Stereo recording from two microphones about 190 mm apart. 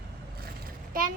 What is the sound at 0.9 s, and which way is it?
Speech, 50° right (ahead or behind).